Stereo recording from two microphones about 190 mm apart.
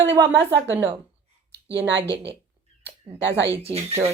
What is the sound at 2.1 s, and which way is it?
Speech, 30° right (ahead or behind).